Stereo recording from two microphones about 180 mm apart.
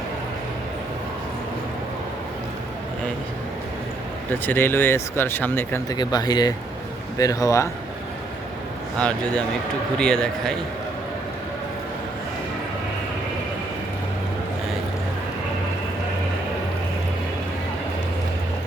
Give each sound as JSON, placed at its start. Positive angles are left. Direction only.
{"t": 4.3, "sound": "speech", "side_deg": 10}
{"t": 9.0, "sound": "a man's voice", "side_deg": 5}